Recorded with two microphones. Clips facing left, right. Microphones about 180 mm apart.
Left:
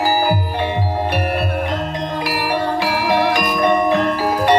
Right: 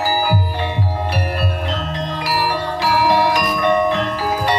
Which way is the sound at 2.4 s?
55° left (ahead or behind).